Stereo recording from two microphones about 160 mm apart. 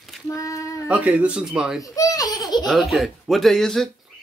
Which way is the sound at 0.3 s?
20° left (ahead or behind).